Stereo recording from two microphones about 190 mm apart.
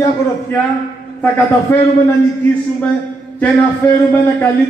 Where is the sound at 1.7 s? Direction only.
10° left (ahead or behind).